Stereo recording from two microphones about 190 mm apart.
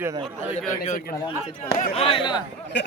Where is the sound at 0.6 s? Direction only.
40° left (ahead or behind).